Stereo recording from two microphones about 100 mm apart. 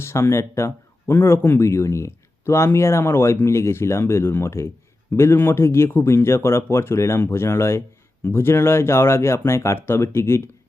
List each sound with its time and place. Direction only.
0.0 s speech: 25° left (ahead or behind)